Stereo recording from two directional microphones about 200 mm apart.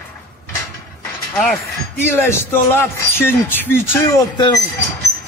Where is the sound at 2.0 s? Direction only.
10° left (ahead or behind).